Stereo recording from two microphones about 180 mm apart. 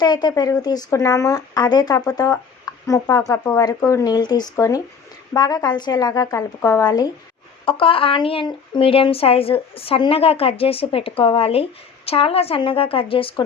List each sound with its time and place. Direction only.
0.0 s speech: 25° left (ahead or behind)